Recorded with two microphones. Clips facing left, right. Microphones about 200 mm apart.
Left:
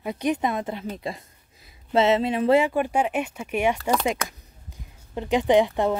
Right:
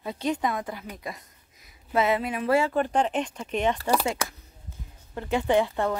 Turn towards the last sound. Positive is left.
turn(degrees=15)  # may be behind; listen again after turning